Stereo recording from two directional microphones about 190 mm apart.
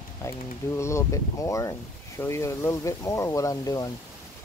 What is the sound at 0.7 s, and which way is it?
Speech, 15° left (ahead or behind).